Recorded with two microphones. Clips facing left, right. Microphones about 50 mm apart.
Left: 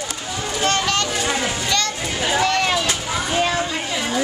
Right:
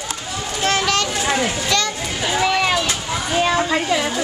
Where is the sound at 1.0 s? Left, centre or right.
Centre.